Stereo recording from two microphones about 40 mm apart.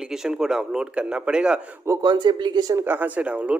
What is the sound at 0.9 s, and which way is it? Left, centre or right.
Speech, right.